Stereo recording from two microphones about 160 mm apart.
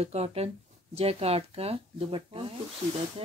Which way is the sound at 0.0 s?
40° right (ahead or behind).